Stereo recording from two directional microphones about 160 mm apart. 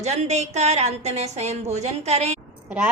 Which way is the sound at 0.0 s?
45° right (ahead or behind).